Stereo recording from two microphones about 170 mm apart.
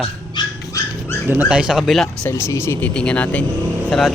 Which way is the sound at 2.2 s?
15° left (ahead or behind).